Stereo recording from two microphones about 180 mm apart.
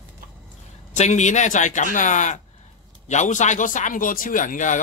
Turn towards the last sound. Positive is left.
turn(degrees=45)  # may be behind; listen again after turning